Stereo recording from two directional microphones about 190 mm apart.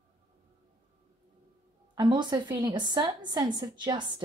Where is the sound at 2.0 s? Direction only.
25° right (ahead or behind).